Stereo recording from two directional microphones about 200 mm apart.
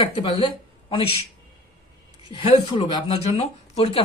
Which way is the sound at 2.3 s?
25° left (ahead or behind).